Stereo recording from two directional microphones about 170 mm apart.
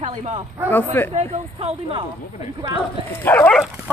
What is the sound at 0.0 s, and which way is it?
Speech, 40° right (ahead or behind).